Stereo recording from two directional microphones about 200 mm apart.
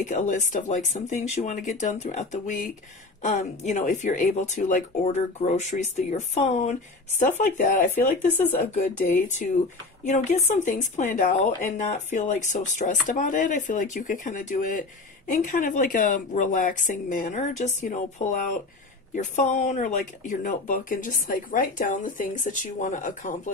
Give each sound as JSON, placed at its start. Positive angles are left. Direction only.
{"t": 0.0, "sound": "speech", "side_deg": 40}
{"t": 9.3, "sound": "speech", "side_deg": 35}